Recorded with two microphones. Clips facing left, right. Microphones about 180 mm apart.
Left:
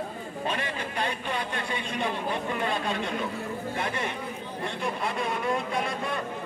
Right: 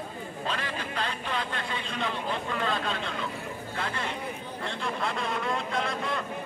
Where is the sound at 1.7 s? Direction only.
15° left (ahead or behind).